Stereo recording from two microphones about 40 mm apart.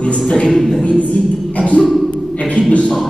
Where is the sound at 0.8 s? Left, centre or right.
Left.